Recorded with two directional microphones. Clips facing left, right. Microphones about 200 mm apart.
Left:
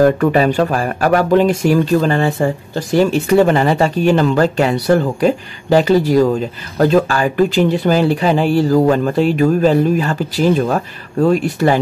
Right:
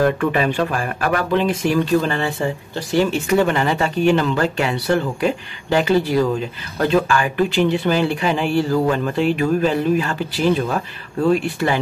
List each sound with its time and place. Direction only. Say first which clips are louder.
0.0 s speech: left 6 dB; 40° left (ahead or behind)